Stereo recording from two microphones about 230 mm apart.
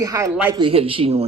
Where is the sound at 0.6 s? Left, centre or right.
Right.